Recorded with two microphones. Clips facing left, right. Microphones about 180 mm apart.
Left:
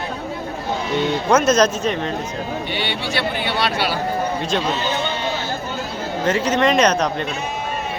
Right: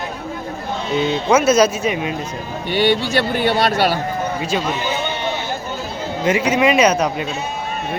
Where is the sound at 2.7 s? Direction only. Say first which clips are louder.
Right 8 dB; 45° right (ahead or behind).